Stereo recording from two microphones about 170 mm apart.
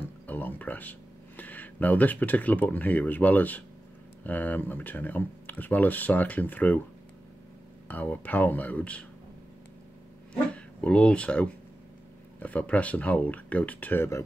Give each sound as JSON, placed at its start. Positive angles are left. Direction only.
{"t": 0.3, "sound": "speech", "side_deg": 10}
{"t": 7.9, "sound": "speech", "side_deg": 10}
{"t": 10.5, "sound": "speech", "side_deg": 5}